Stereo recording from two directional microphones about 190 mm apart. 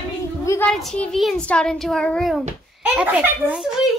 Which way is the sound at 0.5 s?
5° left (ahead or behind).